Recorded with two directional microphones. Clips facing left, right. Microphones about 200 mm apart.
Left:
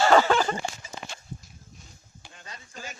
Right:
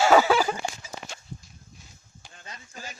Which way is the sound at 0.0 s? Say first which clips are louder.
Right 1 dB; 10° right (ahead or behind).